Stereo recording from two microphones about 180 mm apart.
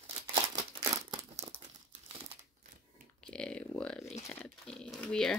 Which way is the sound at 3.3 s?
5° left (ahead or behind).